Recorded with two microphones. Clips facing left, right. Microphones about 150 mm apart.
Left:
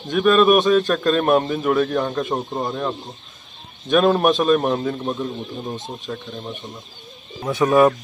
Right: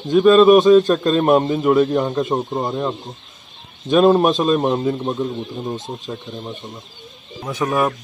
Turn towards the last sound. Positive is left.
turn(degrees=0)  # may be behind; listen again after turning